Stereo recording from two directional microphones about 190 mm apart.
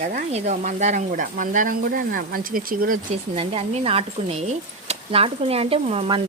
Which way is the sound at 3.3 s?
30° right (ahead or behind).